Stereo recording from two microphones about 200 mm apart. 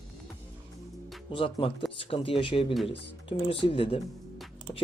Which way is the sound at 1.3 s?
30° left (ahead or behind).